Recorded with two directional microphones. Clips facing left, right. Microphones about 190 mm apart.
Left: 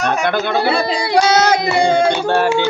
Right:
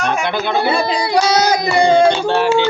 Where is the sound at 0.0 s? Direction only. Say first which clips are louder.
Left 1 dB; 45° left (ahead or behind).